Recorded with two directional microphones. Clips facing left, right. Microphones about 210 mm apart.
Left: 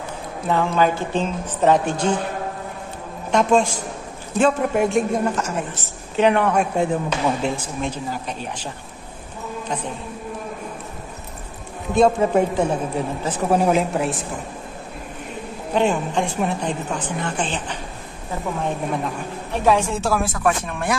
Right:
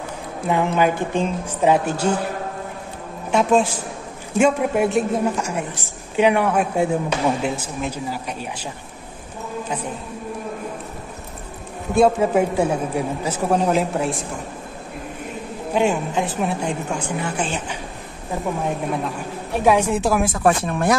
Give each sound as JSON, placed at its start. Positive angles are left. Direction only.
{"t": 0.5, "sound": "a woman's voice", "side_deg": -15}
{"t": 3.3, "sound": "a woman's voice", "side_deg": -5}
{"t": 11.9, "sound": "a woman's voice", "side_deg": -5}
{"t": 13.5, "sound": "a woman's voice", "side_deg": 5}
{"t": 15.7, "sound": "a woman's voice", "side_deg": -5}
{"t": 18.9, "sound": "a woman's voice", "side_deg": -10}
{"t": 20.4, "sound": "speech", "side_deg": -35}